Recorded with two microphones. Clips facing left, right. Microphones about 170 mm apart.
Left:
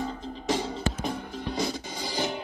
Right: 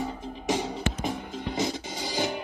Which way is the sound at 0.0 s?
15° right (ahead or behind).